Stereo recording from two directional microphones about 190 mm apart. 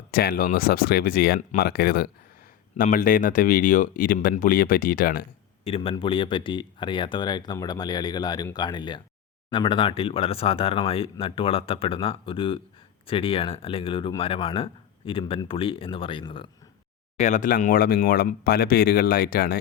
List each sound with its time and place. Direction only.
0.1 s speech: 55° left (ahead or behind)
5.6 s speech: 30° left (ahead or behind)
17.2 s speech: 40° left (ahead or behind)